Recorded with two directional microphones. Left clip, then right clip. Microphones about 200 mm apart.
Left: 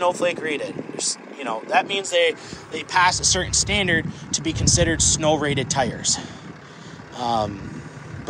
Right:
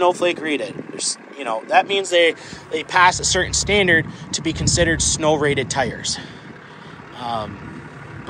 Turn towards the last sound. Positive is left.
turn(degrees=30)  # may be behind; listen again after turning